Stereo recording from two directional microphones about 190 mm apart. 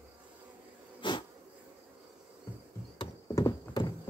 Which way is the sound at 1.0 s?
25° left (ahead or behind).